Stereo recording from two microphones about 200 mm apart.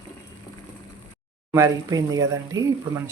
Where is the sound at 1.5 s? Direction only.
15° right (ahead or behind).